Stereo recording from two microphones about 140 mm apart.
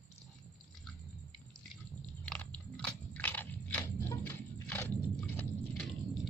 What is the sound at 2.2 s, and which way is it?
Biting, 10° left (ahead or behind).